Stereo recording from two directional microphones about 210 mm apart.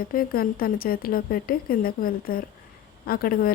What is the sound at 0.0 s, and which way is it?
Speech, 45° left (ahead or behind).